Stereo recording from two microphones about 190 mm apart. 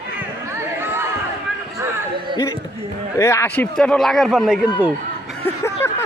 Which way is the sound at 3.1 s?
15° left (ahead or behind).